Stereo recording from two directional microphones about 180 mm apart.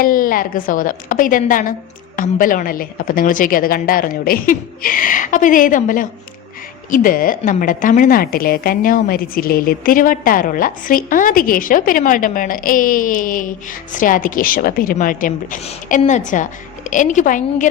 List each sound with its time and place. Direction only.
0.0 s a woman's voice: 50° left (ahead or behind)